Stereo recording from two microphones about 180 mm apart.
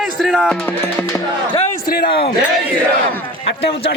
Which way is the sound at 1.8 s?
55° left (ahead or behind).